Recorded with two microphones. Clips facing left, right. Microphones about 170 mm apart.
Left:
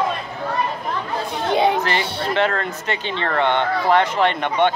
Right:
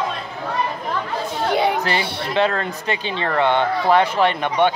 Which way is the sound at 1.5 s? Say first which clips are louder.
Left 2 dB; 20° left (ahead or behind).